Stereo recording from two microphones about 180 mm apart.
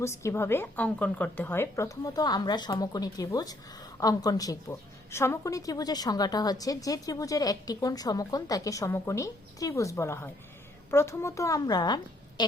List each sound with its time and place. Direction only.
0.0 s a woman's voice: 15° left (ahead or behind)